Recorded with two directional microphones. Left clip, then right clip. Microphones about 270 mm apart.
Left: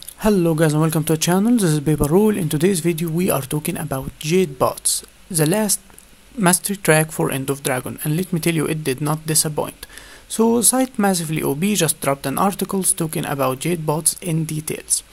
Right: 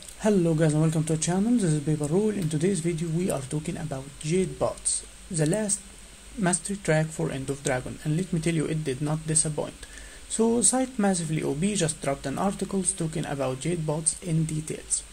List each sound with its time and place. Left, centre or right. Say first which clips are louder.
0.2 s speech: left 6 dB; centre